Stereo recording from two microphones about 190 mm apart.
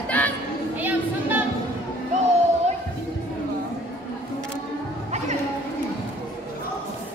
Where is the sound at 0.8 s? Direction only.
10° right (ahead or behind).